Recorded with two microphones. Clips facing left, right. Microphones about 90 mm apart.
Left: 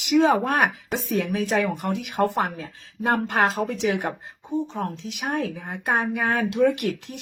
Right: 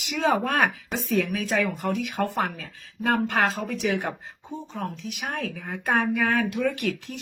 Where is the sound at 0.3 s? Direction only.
20° left (ahead or behind).